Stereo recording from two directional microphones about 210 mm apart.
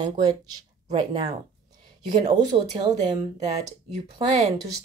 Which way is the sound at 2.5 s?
25° right (ahead or behind).